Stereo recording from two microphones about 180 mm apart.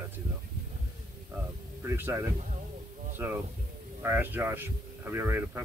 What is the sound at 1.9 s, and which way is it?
Speech, 15° right (ahead or behind).